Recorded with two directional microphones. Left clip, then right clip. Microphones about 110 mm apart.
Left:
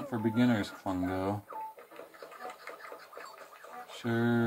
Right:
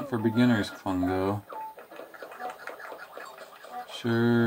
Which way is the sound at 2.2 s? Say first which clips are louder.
Right 7 dB; centre (ahead or behind).